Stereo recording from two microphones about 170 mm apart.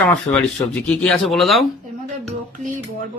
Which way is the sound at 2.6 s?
50° right (ahead or behind).